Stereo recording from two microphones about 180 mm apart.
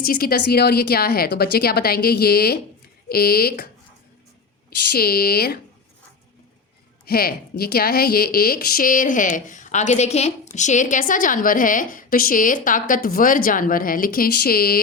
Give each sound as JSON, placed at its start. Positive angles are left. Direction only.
{"t": 0.0, "sound": "speech", "side_deg": 55}
{"t": 4.9, "sound": "speech", "side_deg": 60}
{"t": 7.0, "sound": "a woman's voice", "side_deg": 55}